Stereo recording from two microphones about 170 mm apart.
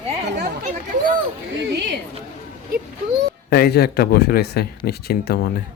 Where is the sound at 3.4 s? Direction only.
70° left (ahead or behind).